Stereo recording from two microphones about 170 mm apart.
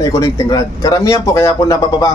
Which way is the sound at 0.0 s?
20° left (ahead or behind).